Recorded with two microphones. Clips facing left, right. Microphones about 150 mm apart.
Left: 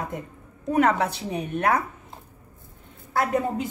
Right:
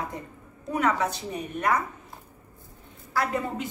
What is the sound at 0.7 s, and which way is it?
A woman's voice, 60° left (ahead or behind).